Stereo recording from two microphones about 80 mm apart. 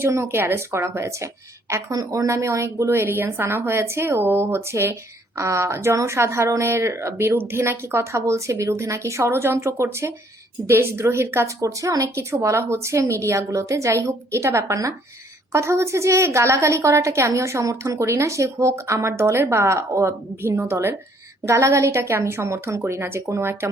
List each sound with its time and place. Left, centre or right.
0.0 s a woman's voice: right